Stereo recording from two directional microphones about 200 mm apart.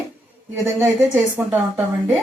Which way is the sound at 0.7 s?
10° right (ahead or behind).